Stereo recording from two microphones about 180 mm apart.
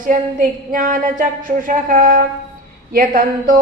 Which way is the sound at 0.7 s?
45° right (ahead or behind).